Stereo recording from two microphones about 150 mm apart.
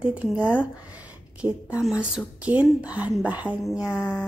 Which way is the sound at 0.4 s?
10° left (ahead or behind).